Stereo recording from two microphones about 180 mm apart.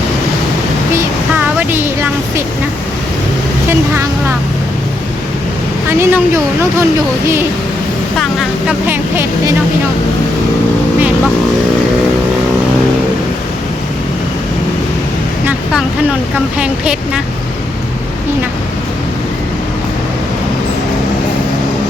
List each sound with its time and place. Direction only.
0.9 s a sound: 10° right (ahead or behind)
3.7 s vehicle: 15° right (ahead or behind)
5.9 s speech: 15° right (ahead or behind)
8.2 s speech: centre (ahead or behind)
8.9 s speech: 15° right (ahead or behind)
16.6 s speech: 5° right (ahead or behind)